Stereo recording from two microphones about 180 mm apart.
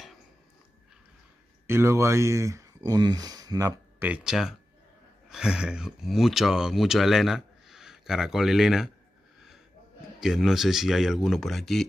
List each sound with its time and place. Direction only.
1.7 s speech: 15° right (ahead or behind)
4.1 s speech: 5° right (ahead or behind)
10.2 s speech: centre (ahead or behind)